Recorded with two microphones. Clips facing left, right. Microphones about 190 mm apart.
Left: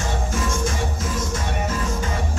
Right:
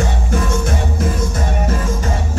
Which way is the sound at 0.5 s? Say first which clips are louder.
Right 5 dB; 65° right (ahead or behind).